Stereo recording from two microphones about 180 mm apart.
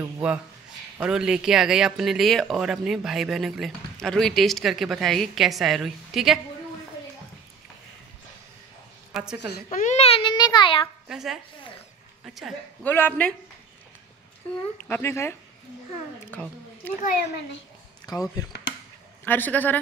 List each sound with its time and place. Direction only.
0.0 s speech: 5° right (ahead or behind)
9.1 s a woman's voice: 5° right (ahead or behind)
9.7 s a child's voice: 45° left (ahead or behind); by 10.9 s 30° left (ahead or behind)
11.1 s speech: centre (ahead or behind)
12.8 s a man's voice: 10° left (ahead or behind)
14.8 s a man's voice: 10° left (ahead or behind)
18.0 s a child's voice: 20° left (ahead or behind)
19.2 s a man's voice: 10° left (ahead or behind)